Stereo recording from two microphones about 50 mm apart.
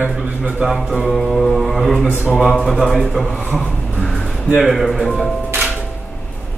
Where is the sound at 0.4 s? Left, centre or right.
Right.